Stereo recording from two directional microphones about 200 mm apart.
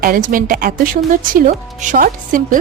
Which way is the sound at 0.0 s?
45° right (ahead or behind).